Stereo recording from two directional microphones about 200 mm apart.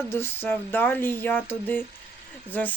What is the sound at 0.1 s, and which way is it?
Speech, 10° left (ahead or behind).